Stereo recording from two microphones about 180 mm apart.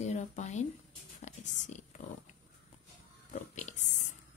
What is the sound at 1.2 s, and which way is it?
Whispering, 40° left (ahead or behind).